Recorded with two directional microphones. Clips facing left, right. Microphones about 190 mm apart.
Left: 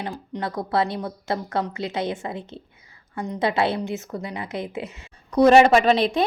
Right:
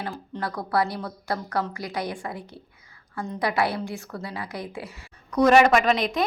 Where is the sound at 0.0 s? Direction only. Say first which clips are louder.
Left 2 dB; 20° left (ahead or behind).